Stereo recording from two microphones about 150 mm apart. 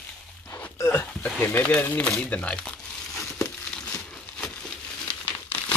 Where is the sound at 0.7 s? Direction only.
20° left (ahead or behind).